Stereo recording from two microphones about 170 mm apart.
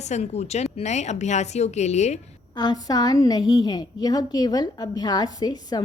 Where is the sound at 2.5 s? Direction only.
25° left (ahead or behind).